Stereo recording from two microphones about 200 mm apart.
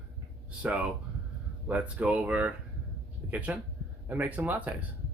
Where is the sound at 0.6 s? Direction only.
5° right (ahead or behind).